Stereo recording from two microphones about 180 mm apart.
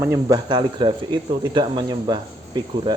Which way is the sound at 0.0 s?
20° right (ahead or behind).